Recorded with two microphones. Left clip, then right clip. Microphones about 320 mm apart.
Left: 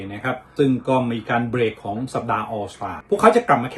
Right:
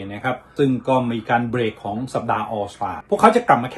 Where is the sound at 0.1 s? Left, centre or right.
Centre.